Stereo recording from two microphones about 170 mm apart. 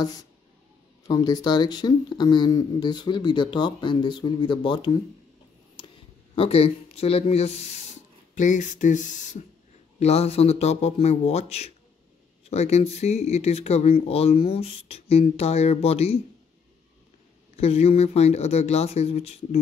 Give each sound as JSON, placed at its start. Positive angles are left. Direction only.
{"t": 1.0, "sound": "speech", "side_deg": 20}
{"t": 6.3, "sound": "speech", "side_deg": 35}
{"t": 17.6, "sound": "speech", "side_deg": 35}